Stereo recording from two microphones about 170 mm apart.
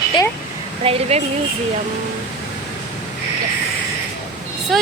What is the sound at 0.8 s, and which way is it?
Speech, 35° right (ahead or behind).